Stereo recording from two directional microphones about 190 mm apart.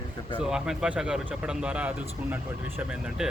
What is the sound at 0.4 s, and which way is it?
Speech, 5° right (ahead or behind).